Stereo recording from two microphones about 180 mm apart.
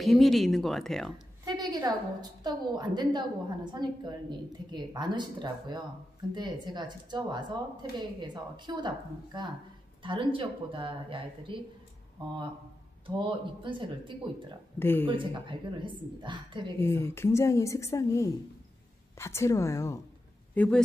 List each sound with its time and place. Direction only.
0.0 s speech: centre (ahead or behind)
1.4 s a sound: 20° right (ahead or behind)
2.4 s a woman's voice: 25° right (ahead or behind)
13.0 s a woman's voice: 30° right (ahead or behind)
14.8 s a woman's voice: 10° left (ahead or behind)
15.0 s a woman's voice: 25° right (ahead or behind)
16.8 s a woman's voice: 10° left (ahead or behind)